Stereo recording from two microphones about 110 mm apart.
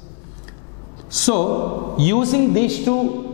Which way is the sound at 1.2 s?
10° left (ahead or behind).